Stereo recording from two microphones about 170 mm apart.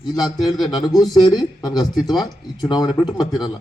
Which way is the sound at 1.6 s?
25° left (ahead or behind).